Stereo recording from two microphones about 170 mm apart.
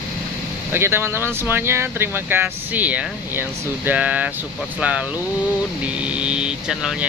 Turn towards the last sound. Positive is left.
turn(degrees=-5)  # may be behind; listen again after turning